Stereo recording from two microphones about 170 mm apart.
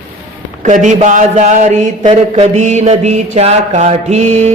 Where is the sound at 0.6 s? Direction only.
45° right (ahead or behind).